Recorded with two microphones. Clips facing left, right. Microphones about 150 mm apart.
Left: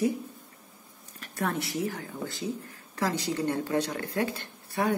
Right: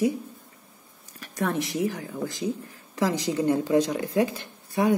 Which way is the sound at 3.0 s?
15° right (ahead or behind).